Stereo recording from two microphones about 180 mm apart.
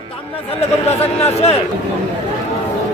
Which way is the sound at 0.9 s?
35° left (ahead or behind).